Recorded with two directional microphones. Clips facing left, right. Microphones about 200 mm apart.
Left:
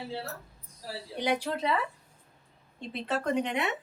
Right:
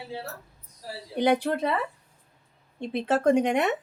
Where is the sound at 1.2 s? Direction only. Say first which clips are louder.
Right 6 dB; 55° right (ahead or behind).